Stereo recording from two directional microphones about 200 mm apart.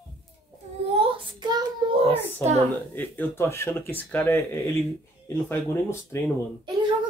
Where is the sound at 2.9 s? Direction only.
10° left (ahead or behind).